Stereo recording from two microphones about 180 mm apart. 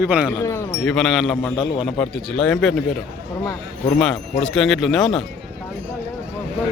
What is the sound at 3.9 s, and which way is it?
A man's voice, 5° left (ahead or behind).